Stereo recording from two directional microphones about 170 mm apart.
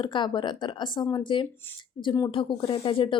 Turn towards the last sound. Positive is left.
turn(degrees=30)  # may be behind; listen again after turning